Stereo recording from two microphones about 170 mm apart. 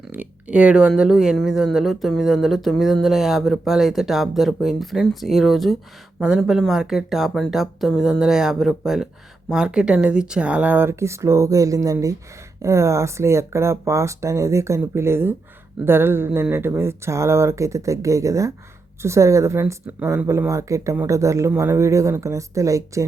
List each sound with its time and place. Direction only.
0.1 s speech: 10° right (ahead or behind)